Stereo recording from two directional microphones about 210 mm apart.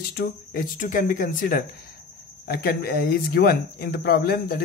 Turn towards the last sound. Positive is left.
turn(degrees=45)  # may be behind; listen again after turning